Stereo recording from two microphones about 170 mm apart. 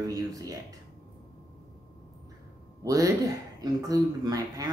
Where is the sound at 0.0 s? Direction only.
20° right (ahead or behind).